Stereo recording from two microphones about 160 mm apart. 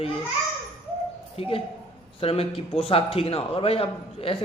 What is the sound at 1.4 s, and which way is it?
A man's voice, 35° left (ahead or behind).